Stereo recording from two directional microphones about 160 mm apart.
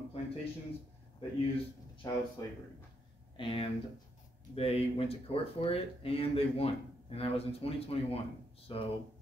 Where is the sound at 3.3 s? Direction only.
35° left (ahead or behind).